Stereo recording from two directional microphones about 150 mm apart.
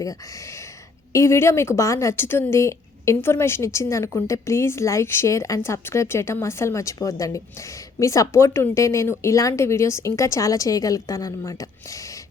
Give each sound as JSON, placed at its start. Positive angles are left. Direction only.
{"t": 0.0, "sound": "speech", "side_deg": 20}